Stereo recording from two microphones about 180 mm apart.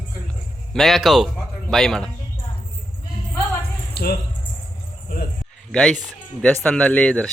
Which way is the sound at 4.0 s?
60° left (ahead or behind).